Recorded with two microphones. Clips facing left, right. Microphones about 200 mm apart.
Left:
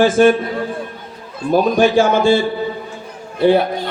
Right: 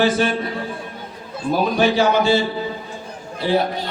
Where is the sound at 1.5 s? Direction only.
50° left (ahead or behind).